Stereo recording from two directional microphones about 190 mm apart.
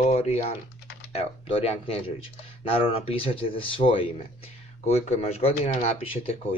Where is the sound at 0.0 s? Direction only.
35° left (ahead or behind).